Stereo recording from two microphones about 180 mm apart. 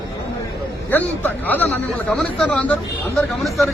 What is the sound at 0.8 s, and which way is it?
A man's voice, 10° left (ahead or behind).